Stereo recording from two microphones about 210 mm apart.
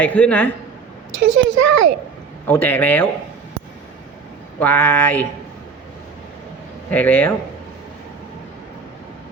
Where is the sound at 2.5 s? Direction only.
10° left (ahead or behind).